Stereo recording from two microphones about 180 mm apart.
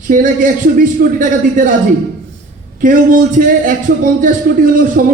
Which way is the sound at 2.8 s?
45° right (ahead or behind).